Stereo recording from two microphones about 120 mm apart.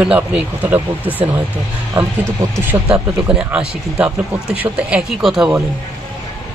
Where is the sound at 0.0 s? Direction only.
10° right (ahead or behind).